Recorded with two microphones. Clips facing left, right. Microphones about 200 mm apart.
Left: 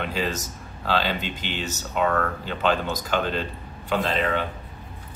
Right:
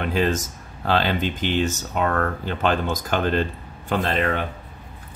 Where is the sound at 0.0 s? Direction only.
50° right (ahead or behind).